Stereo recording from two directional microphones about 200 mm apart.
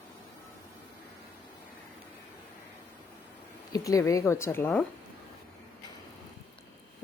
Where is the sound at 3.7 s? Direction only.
15° left (ahead or behind).